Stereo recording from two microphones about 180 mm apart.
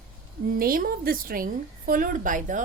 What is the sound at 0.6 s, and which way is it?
A woman's voice, 55° right (ahead or behind).